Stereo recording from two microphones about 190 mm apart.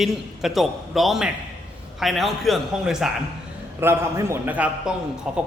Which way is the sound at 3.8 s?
15° right (ahead or behind).